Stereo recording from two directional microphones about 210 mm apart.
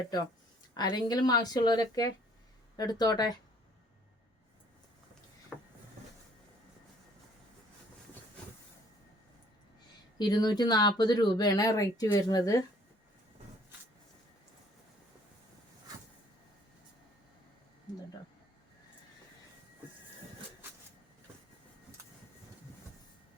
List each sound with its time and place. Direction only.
0.7 s speech: 20° left (ahead or behind)
5.5 s a sound: centre (ahead or behind)
10.2 s speech: 20° left (ahead or behind)